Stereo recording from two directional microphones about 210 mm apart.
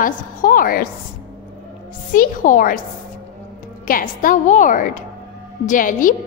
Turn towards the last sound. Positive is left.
turn(degrees=40)  # may be behind; listen again after turning